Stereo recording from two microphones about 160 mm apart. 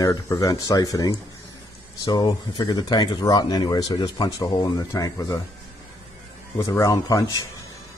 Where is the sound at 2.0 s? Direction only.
30° left (ahead or behind).